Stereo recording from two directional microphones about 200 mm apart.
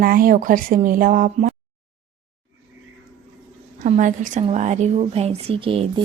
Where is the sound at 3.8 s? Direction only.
40° right (ahead or behind).